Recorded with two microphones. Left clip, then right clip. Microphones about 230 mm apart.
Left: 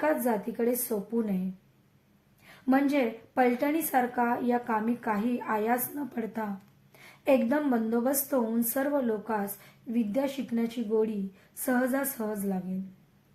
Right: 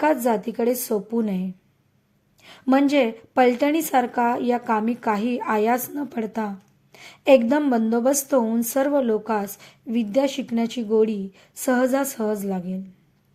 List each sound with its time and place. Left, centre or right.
0.0 s a woman's voice: right
2.4 s a woman's voice: right